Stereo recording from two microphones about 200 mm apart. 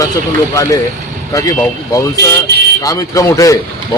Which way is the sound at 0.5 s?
15° left (ahead or behind).